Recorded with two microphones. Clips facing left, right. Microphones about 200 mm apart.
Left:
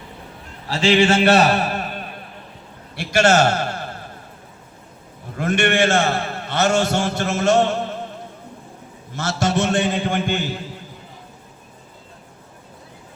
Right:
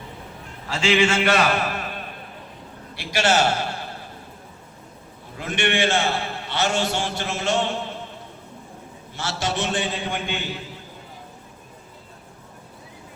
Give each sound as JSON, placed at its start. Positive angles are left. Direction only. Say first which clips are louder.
{"t": 0.7, "sound": "a man's voice", "louder": "left 4 dB", "side_deg": 35}
{"t": 5.4, "sound": "a man's voice", "louder": "left 5 dB", "side_deg": 45}
{"t": 9.1, "sound": "a man's voice", "louder": "left 6 dB", "side_deg": 45}